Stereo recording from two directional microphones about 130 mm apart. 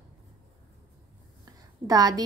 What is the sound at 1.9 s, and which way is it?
Speech, 30° right (ahead or behind).